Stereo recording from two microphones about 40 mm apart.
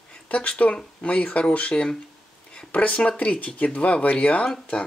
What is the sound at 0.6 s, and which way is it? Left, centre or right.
Speech, left.